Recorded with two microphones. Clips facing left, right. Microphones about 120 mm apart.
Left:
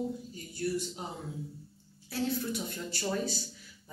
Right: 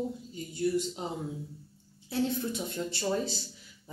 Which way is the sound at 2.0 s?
25° right (ahead or behind).